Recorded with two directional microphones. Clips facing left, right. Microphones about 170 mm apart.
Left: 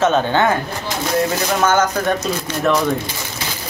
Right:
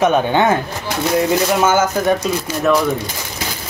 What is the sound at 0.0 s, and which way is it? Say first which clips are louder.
Speech: right 1 dB; 15° right (ahead or behind).